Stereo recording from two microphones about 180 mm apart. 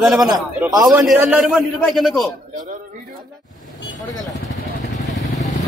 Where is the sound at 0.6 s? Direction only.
20° right (ahead or behind).